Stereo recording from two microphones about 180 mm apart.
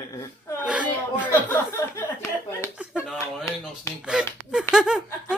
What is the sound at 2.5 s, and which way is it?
Speech, 5° right (ahead or behind).